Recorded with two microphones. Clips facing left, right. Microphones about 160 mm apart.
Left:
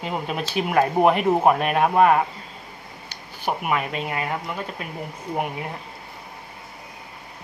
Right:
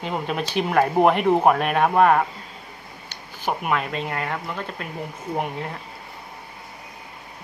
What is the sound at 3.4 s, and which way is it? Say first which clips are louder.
Speech: even; 10° left (ahead or behind).